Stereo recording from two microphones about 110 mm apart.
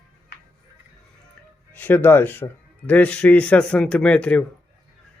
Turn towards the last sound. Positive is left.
turn(degrees=10)  # may be behind; listen again after turning